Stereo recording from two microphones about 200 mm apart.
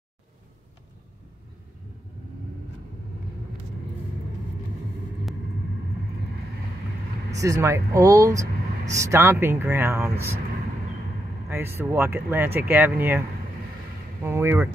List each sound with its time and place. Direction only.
7.3 s speech: 15° right (ahead or behind)
11.4 s speech: 10° right (ahead or behind)
14.2 s speech: 10° right (ahead or behind)